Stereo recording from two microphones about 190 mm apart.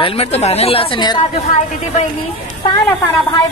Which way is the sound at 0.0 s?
30° left (ahead or behind).